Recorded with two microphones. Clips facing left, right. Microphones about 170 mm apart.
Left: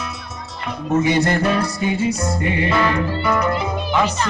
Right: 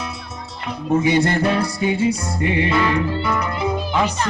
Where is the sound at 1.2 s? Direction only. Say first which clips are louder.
Even; 30° right (ahead or behind).